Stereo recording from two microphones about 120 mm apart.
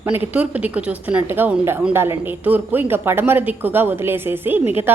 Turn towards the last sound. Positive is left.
turn(degrees=-20)  # may be behind; listen again after turning